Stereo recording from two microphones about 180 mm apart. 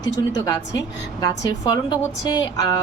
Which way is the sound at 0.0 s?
20° left (ahead or behind).